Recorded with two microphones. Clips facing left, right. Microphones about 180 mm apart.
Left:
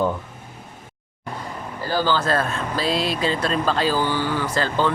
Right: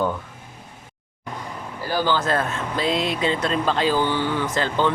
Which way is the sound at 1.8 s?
15° right (ahead or behind).